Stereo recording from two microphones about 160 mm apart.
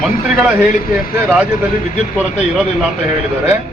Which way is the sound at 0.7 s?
60° left (ahead or behind).